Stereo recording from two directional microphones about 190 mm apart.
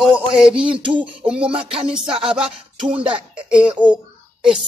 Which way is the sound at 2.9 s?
30° right (ahead or behind).